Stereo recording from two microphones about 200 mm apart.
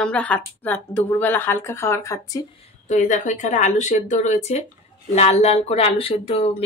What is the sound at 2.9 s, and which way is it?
Speech, 35° left (ahead or behind).